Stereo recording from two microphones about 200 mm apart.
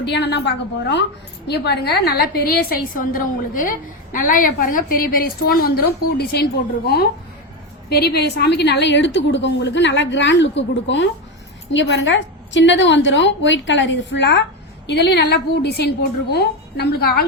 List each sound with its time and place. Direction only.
0.0 s a woman's voice: 60° left (ahead or behind)